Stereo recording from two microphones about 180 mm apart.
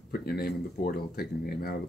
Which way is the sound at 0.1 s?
60° left (ahead or behind).